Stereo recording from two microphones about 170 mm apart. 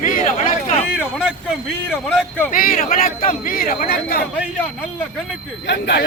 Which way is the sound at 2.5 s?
55° left (ahead or behind).